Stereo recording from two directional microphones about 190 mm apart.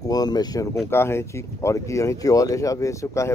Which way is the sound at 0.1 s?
20° left (ahead or behind).